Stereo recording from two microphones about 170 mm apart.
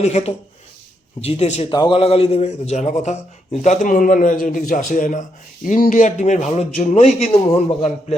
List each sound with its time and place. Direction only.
0.0 s speech: 40° left (ahead or behind)
1.7 s a man's voice: 30° left (ahead or behind)